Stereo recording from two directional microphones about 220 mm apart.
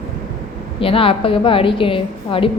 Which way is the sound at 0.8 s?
25° left (ahead or behind).